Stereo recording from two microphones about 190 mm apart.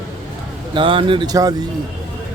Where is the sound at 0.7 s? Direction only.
25° right (ahead or behind).